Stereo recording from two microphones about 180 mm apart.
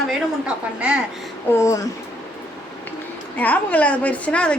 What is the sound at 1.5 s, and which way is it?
Speech, 15° left (ahead or behind).